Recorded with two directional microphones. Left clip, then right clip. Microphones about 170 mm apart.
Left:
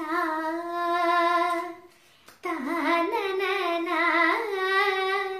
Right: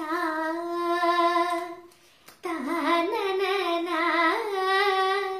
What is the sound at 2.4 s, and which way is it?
Singing, centre (ahead or behind).